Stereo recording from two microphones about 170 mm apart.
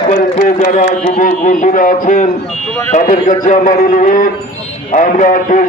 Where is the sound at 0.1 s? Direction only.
50° left (ahead or behind).